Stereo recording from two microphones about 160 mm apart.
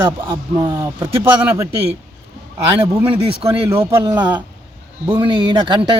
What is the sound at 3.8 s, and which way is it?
A man's voice, 15° right (ahead or behind).